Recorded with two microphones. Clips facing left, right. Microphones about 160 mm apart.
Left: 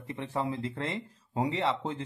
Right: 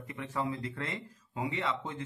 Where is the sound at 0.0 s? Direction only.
30° left (ahead or behind).